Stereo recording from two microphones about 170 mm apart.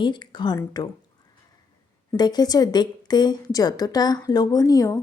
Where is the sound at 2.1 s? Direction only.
25° left (ahead or behind).